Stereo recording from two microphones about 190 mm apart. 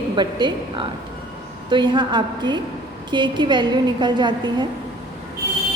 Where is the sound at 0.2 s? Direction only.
25° right (ahead or behind).